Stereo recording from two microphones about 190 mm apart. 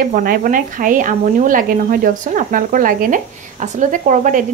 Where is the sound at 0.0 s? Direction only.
50° right (ahead or behind).